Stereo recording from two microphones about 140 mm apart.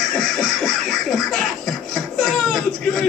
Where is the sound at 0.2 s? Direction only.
Centre (ahead or behind).